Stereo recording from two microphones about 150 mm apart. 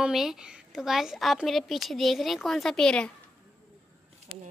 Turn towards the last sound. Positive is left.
turn(degrees=5)  # may be behind; listen again after turning